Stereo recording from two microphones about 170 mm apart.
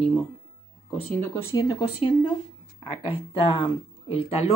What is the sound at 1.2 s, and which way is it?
Speech, 15° left (ahead or behind).